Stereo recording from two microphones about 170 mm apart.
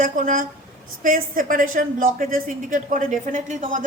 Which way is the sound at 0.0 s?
55° right (ahead or behind).